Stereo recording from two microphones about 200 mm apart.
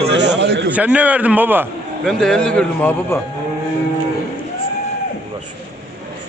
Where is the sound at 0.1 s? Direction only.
60° right (ahead or behind).